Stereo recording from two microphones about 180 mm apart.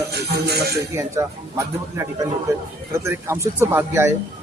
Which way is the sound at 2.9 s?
15° right (ahead or behind).